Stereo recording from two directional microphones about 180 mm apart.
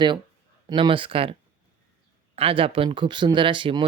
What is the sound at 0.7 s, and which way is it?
Speech, 30° right (ahead or behind).